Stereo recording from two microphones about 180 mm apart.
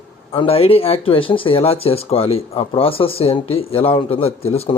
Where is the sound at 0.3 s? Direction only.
30° left (ahead or behind).